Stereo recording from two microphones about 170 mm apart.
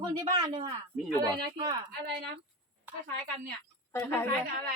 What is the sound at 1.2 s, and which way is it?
Speech, 25° right (ahead or behind).